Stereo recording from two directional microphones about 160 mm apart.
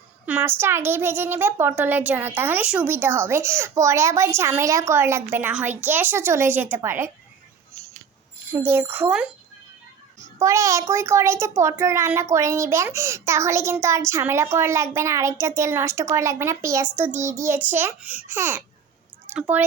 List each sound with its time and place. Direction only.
0.3 s a child's voice: 10° right (ahead or behind)
8.4 s a child's voice: 15° right (ahead or behind)
10.4 s a child's voice: 20° right (ahead or behind)